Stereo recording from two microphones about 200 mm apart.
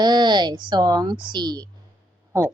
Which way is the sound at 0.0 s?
20° right (ahead or behind).